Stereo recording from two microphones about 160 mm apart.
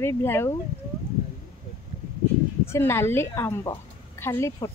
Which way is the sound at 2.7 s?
15° left (ahead or behind).